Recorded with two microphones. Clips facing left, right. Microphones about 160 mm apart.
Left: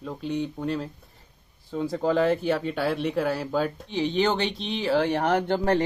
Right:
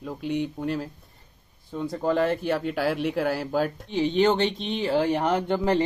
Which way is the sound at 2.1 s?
Centre (ahead or behind).